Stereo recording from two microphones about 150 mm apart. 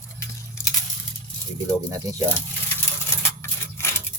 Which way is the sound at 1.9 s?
20° right (ahead or behind).